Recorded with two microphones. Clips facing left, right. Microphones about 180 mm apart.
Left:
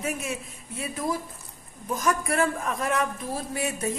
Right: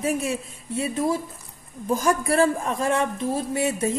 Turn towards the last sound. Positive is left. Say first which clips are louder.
# right 6 dB
turn(degrees=-25)  # may be behind; listen again after turning